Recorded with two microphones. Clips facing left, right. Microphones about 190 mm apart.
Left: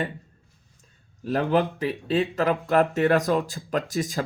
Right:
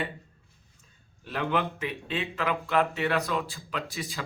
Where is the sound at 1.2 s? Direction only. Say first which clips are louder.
Left 7 dB; 40° left (ahead or behind).